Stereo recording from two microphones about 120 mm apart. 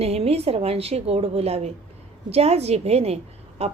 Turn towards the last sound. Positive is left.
turn(degrees=-60)  # may be behind; listen again after turning